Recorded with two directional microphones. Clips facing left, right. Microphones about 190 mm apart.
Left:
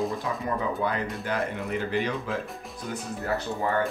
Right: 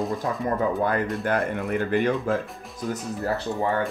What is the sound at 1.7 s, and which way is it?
Speech, 55° right (ahead or behind).